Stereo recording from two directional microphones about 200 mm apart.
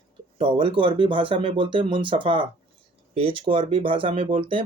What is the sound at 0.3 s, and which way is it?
Speech, 25° right (ahead or behind).